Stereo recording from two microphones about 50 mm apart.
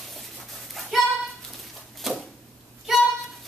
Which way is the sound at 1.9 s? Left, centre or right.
Centre.